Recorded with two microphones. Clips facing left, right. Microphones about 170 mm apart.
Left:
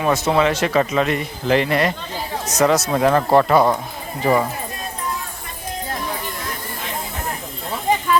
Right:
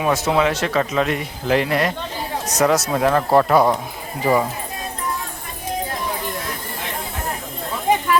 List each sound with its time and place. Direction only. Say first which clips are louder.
0.0 s speech: left 1 dB; 5° right (ahead or behind)